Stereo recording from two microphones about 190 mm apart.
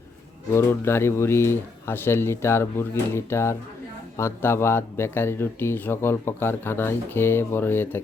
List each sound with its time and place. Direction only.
0.5 s speech: 15° left (ahead or behind)